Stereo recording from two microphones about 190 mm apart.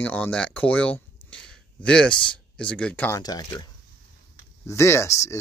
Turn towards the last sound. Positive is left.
turn(degrees=15)  # may be behind; listen again after turning